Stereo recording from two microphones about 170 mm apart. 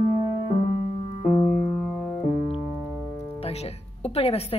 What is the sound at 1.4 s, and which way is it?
Music, 5° left (ahead or behind).